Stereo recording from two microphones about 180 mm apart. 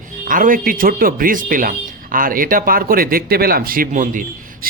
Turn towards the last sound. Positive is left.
turn(degrees=-45)  # may be behind; listen again after turning